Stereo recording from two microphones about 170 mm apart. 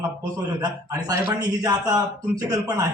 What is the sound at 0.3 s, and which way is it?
Speech, 20° right (ahead or behind).